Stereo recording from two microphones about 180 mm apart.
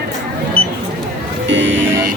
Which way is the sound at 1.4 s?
90° right.